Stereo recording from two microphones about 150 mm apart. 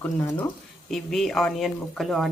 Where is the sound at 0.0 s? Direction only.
15° left (ahead or behind).